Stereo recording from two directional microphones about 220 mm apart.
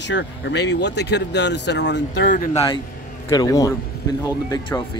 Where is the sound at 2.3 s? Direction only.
35° left (ahead or behind).